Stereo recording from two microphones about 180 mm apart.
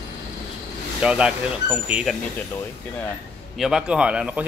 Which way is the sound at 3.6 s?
5° right (ahead or behind).